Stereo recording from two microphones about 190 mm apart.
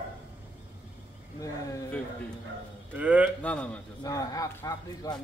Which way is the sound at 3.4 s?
5° left (ahead or behind).